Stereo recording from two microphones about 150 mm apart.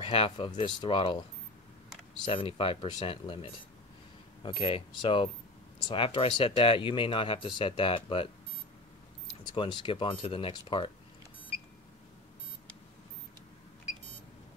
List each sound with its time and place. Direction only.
0.0 s speech: 35° left (ahead or behind)
2.2 s speech: 35° left (ahead or behind)
9.5 s speech: 30° left (ahead or behind)